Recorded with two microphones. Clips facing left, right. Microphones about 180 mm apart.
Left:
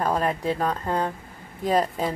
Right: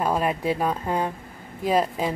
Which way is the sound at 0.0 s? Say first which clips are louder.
Right 1 dB; 10° right (ahead or behind).